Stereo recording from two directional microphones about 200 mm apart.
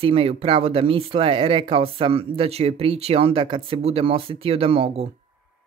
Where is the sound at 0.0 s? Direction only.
30° right (ahead or behind).